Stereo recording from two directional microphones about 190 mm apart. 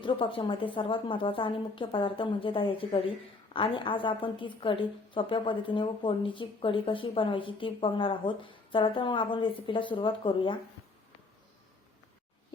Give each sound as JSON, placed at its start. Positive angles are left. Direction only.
{"t": 0.0, "sound": "a woman's voice", "side_deg": 25}